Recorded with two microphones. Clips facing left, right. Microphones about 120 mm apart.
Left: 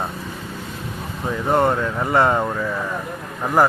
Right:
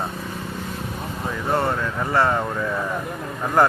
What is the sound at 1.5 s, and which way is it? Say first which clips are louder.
Speech: left 4 dB; 20° left (ahead or behind).